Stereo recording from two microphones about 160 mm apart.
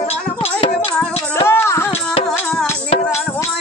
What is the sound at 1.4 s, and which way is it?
Music, 15° left (ahead or behind).